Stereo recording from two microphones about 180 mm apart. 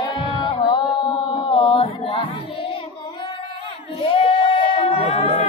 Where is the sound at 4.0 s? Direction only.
30° left (ahead or behind).